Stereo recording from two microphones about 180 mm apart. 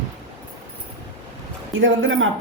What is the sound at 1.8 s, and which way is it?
Speech, 90° right.